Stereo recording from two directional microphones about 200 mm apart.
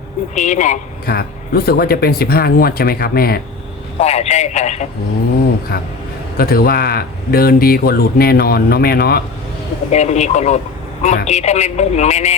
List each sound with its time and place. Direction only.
0.3 s a man's voice: 35° left (ahead or behind)
4.0 s a man's voice: 30° left (ahead or behind)
6.3 s a man's voice: 50° left (ahead or behind)
9.9 s a man's voice: 35° left (ahead or behind)